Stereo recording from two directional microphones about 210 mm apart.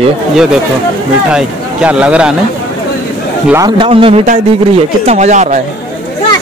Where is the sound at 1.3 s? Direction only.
5° right (ahead or behind).